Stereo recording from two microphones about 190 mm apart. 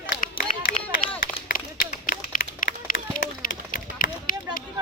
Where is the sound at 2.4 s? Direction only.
45° left (ahead or behind).